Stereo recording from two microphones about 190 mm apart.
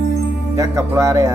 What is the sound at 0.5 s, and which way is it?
Speech, 15° right (ahead or behind).